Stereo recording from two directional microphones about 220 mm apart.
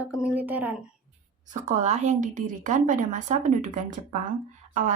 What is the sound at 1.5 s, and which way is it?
A woman's voice, 35° right (ahead or behind).